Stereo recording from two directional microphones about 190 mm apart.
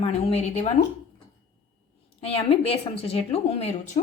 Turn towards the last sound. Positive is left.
turn(degrees=35)  # may be behind; listen again after turning